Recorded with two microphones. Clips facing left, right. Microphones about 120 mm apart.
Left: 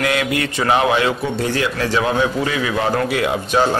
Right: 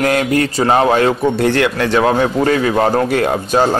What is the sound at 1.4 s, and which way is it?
A man's voice, 65° right (ahead or behind).